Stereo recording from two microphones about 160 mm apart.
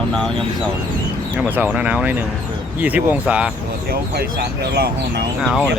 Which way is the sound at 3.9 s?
80° right.